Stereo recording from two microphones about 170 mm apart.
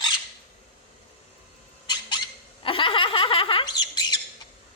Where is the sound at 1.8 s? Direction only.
25° left (ahead or behind).